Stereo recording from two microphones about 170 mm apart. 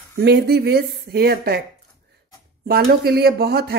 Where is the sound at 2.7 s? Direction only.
65° right (ahead or behind).